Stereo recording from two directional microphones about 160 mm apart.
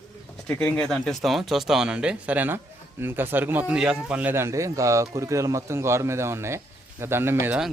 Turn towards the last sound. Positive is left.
turn(degrees=-15)  # may be behind; listen again after turning